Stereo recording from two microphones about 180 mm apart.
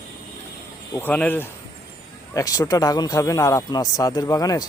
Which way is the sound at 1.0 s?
10° left (ahead or behind).